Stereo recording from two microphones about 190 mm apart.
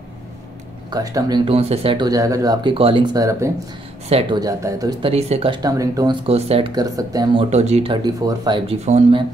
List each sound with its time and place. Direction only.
0.8 s speech: 20° right (ahead or behind)
4.1 s speech: 25° right (ahead or behind)
5.0 s speech: 30° right (ahead or behind)
6.2 s speech: 30° right (ahead or behind)
7.4 s speech: 35° right (ahead or behind)